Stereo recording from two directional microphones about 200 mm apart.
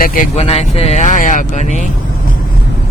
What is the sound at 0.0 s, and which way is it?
Speech, 45° left (ahead or behind).